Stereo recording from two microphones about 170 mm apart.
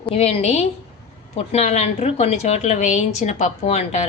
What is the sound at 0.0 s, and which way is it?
Speech, 35° left (ahead or behind).